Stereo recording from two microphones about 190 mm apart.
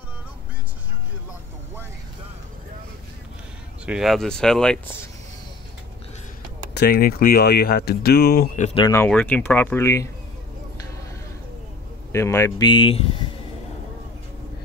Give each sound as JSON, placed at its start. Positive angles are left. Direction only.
{"t": 3.8, "sound": "speech", "side_deg": -5}
{"t": 6.7, "sound": "speech", "side_deg": 60}
{"t": 8.5, "sound": "speech", "side_deg": 30}
{"t": 8.9, "sound": "speech", "side_deg": 10}
{"t": 12.1, "sound": "speech", "side_deg": 15}